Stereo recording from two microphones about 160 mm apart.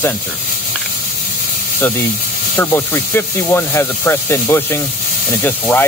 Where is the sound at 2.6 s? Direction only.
15° left (ahead or behind).